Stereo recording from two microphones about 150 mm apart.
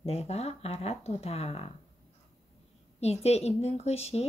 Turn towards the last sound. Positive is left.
turn(degrees=45)  # may be behind; listen again after turning